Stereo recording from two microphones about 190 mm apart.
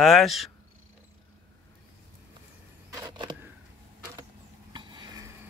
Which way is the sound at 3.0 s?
25° right (ahead or behind).